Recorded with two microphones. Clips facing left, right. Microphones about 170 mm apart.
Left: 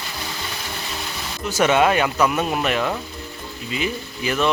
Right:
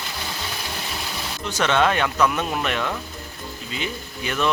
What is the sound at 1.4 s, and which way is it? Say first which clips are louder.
Speech: left 3 dB; 10° left (ahead or behind).